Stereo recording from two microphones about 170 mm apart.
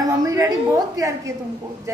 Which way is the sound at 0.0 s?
20° right (ahead or behind).